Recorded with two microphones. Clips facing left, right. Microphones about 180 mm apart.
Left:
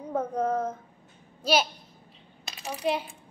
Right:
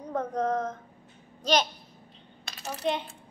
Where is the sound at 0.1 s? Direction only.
10° left (ahead or behind).